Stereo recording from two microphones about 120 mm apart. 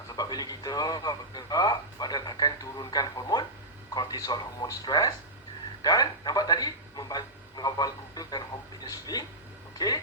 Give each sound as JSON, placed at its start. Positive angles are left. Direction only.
{"t": 0.2, "sound": "a man's voice", "side_deg": 35}